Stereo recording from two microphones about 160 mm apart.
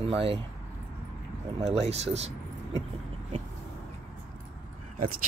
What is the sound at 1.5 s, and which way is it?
Speech, 40° right (ahead or behind).